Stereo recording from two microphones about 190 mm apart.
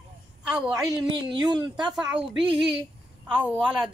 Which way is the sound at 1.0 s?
25° right (ahead or behind).